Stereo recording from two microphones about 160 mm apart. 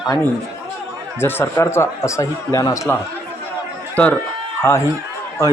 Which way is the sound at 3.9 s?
10° left (ahead or behind).